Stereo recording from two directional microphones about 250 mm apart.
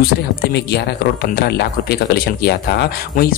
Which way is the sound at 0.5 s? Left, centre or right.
Left.